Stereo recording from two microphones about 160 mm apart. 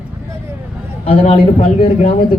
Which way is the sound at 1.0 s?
40° left (ahead or behind).